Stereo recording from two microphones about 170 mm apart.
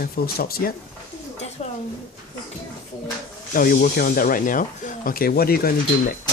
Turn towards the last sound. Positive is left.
turn(degrees=60)  # may be behind; listen again after turning